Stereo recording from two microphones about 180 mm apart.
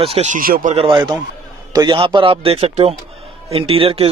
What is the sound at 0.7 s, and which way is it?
A man's voice, 30° right (ahead or behind).